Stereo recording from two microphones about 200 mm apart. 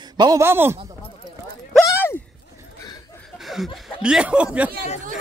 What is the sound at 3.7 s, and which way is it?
Speech, centre (ahead or behind).